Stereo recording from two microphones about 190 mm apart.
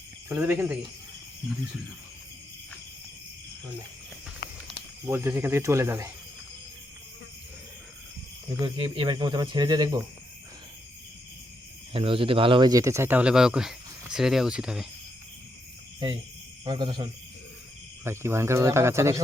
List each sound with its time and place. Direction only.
0.3 s speech: 10° right (ahead or behind)
4.4 s a sound: 55° left (ahead or behind)
5.0 s speech: 15° right (ahead or behind)
8.4 s speech: 25° right (ahead or behind)
11.9 s speech: 25° right (ahead or behind); by 14.8 s 5° right (ahead or behind)
16.6 s speech: 25° right (ahead or behind)
18.0 s speech: 15° right (ahead or behind)